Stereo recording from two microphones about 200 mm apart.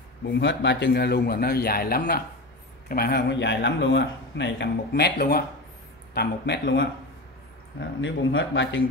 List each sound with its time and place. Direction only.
0.3 s speech: 60° left (ahead or behind)
6.1 s speech: 55° left (ahead or behind)
8.0 s speech: 70° left (ahead or behind)